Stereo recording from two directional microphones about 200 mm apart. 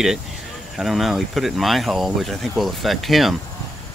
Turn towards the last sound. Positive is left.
turn(degrees=0)  # may be behind; listen again after turning